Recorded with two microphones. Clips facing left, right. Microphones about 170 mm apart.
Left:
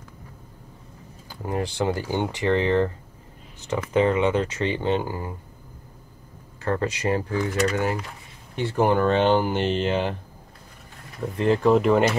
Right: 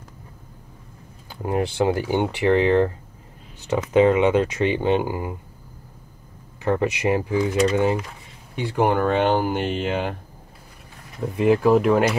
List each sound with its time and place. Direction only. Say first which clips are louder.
1.4 s speech: right 4 dB; 15° right (ahead or behind)
6.6 s speech: right 4 dB; 15° right (ahead or behind)
8.5 s speech: even; 10° right (ahead or behind)
11.3 s speech: right 2 dB; 10° right (ahead or behind)